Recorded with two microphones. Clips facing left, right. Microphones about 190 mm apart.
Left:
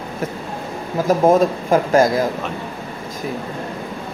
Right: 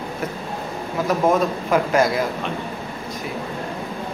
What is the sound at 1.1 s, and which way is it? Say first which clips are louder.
A man's voice: left 5 dB; 35° left (ahead or behind).